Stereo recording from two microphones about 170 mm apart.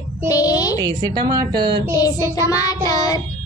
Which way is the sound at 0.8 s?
25° right (ahead or behind).